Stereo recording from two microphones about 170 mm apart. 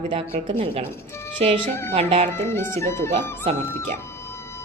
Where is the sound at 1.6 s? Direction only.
15° left (ahead or behind).